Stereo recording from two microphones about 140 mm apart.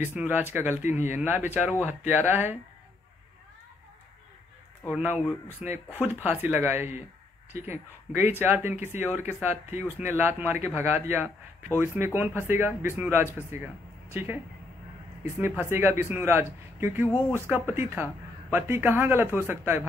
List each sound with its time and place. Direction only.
0.0 s speech: 15° right (ahead or behind)
4.9 s speech: 10° right (ahead or behind)
8.1 s speech: 15° right (ahead or behind)